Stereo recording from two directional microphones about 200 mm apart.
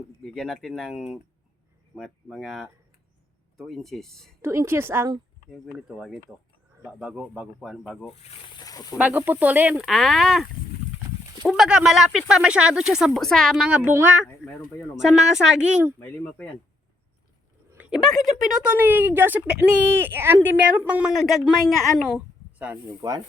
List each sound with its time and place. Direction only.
0.2 s speech: centre (ahead or behind)
4.4 s a woman's voice: 10° right (ahead or behind)
8.5 s speech: 20° left (ahead or behind)
9.0 s a woman's voice: 10° right (ahead or behind)
11.4 s speech: centre (ahead or behind)
14.3 s speech: 10° left (ahead or behind)
15.0 s speech: centre (ahead or behind)
16.0 s speech: 10° left (ahead or behind)
17.7 s a woman's voice: 5° right (ahead or behind)